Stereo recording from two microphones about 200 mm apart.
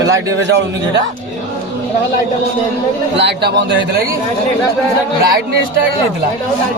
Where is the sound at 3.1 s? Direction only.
60° right (ahead or behind).